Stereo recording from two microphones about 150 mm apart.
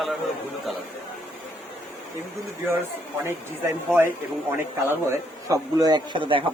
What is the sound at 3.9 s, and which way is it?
A man's voice, 15° right (ahead or behind).